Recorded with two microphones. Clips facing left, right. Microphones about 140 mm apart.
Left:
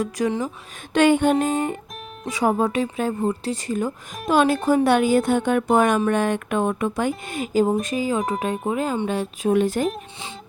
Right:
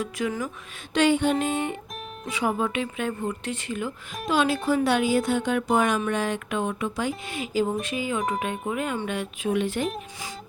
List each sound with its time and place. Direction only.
0.3 s speech: 30° left (ahead or behind)
0.9 s a woman's voice: 50° left (ahead or behind)